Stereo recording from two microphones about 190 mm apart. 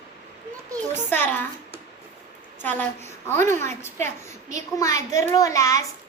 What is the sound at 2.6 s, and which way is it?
A child's voice, 10° left (ahead or behind).